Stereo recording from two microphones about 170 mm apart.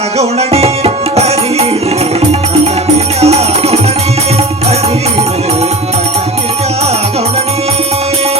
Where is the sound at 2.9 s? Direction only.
40° right (ahead or behind).